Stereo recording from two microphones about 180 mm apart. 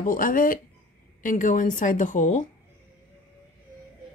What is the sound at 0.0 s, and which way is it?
Speech, 50° left (ahead or behind).